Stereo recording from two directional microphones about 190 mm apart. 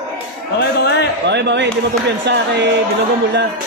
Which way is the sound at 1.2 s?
65° right (ahead or behind).